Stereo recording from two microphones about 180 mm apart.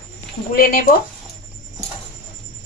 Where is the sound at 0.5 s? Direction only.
55° left (ahead or behind).